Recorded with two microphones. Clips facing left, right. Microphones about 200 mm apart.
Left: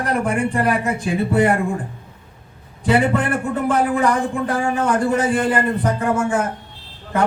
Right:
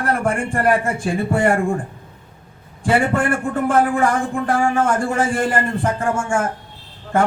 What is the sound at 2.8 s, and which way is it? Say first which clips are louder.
Speech: even; 50° right (ahead or behind).